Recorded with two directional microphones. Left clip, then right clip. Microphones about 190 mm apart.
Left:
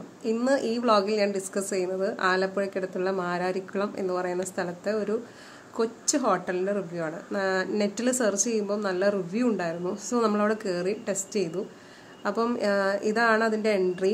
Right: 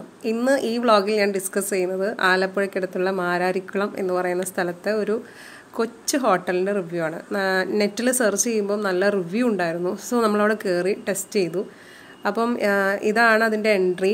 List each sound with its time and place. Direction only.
0.2 s a woman's voice: 15° right (ahead or behind)